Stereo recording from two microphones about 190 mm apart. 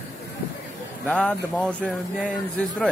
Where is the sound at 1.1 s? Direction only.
5° left (ahead or behind).